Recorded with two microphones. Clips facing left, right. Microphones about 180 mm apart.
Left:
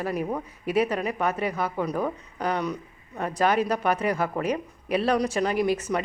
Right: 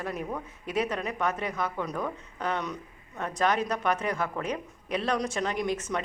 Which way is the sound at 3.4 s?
10° left (ahead or behind).